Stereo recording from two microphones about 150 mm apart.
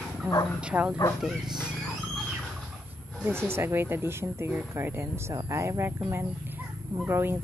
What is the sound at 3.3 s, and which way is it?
Speech, 15° right (ahead or behind).